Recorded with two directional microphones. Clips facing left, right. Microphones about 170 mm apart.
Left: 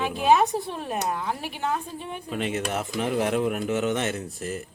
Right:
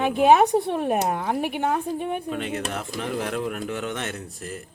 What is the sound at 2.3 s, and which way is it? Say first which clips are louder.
Speech: even; 5° left (ahead or behind).